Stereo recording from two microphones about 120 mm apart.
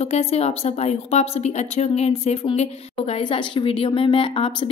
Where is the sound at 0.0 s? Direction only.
55° left (ahead or behind).